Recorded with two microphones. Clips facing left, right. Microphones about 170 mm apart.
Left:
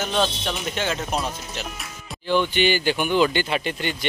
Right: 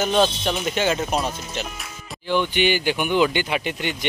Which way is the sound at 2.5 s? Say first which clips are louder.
Even; 15° right (ahead or behind).